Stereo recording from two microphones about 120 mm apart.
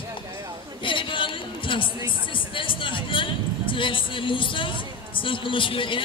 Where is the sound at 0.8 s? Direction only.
45° left (ahead or behind).